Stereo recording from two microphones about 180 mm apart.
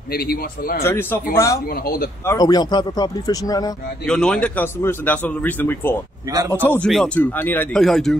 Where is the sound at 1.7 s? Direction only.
55° left (ahead or behind).